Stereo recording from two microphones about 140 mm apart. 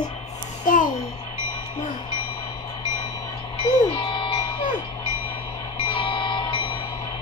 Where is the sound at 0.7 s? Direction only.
80° left.